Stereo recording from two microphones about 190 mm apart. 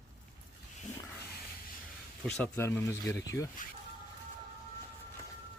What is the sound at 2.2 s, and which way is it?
Speech, 5° left (ahead or behind).